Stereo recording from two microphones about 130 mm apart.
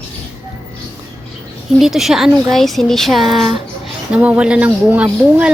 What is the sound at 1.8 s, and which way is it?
Speech, centre (ahead or behind).